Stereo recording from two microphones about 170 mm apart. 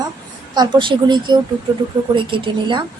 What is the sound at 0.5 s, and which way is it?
Speech, 25° right (ahead or behind).